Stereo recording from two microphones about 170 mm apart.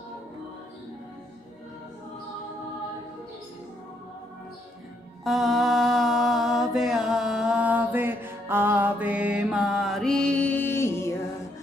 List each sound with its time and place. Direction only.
5.2 s mantra: centre (ahead or behind); by 11.1 s 15° left (ahead or behind)